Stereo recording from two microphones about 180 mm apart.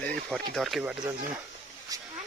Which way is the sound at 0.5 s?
Centre (ahead or behind).